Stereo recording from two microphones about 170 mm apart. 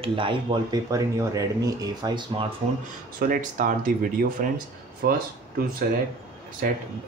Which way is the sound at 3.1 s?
55° right (ahead or behind).